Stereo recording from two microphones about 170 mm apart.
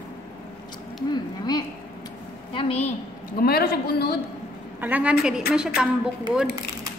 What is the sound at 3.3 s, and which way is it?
Speech, 65° left (ahead or behind).